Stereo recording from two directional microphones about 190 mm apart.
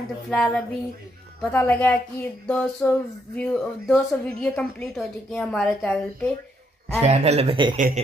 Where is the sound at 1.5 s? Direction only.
10° left (ahead or behind).